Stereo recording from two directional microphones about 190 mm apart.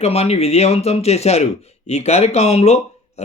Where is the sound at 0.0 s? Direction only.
35° left (ahead or behind).